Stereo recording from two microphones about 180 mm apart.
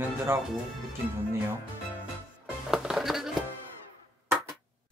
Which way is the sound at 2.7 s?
5° right (ahead or behind).